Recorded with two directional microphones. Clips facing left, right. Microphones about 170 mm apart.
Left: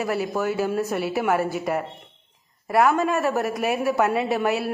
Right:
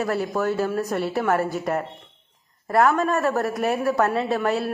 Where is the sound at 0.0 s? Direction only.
5° left (ahead or behind).